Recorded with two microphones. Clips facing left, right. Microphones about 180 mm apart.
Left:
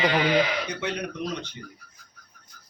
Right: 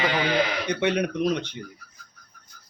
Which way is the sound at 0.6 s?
65° right (ahead or behind).